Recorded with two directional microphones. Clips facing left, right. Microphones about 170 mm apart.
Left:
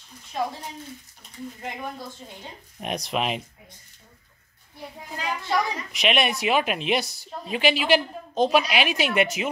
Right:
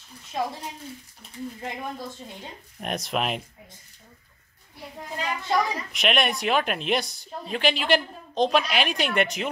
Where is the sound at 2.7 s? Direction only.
Centre (ahead or behind).